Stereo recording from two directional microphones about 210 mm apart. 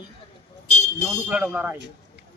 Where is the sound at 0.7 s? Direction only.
35° left (ahead or behind).